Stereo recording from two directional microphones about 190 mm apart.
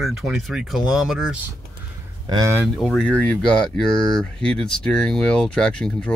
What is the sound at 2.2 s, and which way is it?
Speech, 20° right (ahead or behind).